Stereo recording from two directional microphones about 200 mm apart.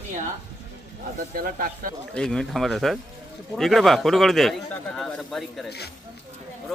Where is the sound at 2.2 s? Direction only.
Centre (ahead or behind).